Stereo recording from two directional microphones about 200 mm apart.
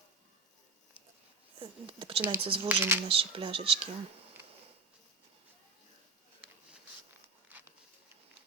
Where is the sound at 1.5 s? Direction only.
25° right (ahead or behind).